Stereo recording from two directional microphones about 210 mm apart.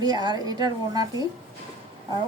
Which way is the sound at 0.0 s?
20° right (ahead or behind).